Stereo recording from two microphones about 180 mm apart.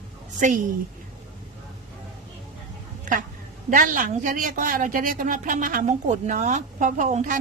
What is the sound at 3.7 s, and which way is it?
A woman's voice, 50° right (ahead or behind).